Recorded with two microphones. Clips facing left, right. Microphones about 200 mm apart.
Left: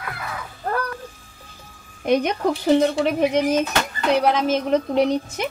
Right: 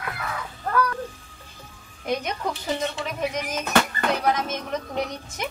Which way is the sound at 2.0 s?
65° left (ahead or behind).